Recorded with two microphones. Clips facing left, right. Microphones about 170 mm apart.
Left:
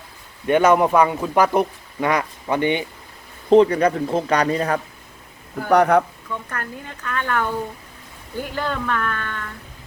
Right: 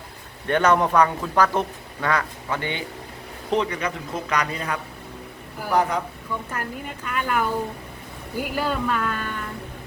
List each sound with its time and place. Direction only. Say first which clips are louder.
0.4 s speech: left 4 dB; 10° left (ahead or behind)
3.5 s a man's voice: left 10 dB; 35° left (ahead or behind)
5.6 s speech: left 7 dB; 65° left (ahead or behind)
6.5 s speech: right 1 dB; 10° right (ahead or behind)